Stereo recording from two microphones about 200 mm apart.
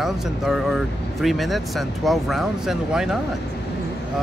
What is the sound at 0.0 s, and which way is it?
Speech, centre (ahead or behind).